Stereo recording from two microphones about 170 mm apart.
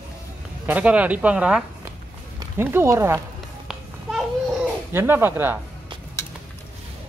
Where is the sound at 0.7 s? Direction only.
10° right (ahead or behind).